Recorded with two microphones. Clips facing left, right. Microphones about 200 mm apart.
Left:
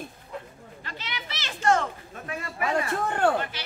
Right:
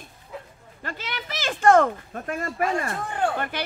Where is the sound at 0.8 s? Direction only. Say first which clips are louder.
Right 5 dB; 50° right (ahead or behind).